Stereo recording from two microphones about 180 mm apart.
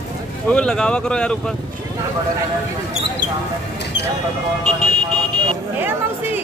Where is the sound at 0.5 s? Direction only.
5° left (ahead or behind).